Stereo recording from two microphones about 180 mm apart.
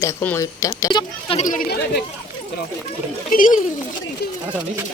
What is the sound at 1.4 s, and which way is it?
Speech, 50° left (ahead or behind).